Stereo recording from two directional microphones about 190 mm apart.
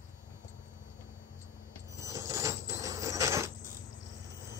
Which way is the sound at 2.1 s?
15° right (ahead or behind).